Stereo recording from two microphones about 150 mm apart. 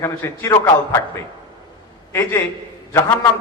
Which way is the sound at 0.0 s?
20° left (ahead or behind).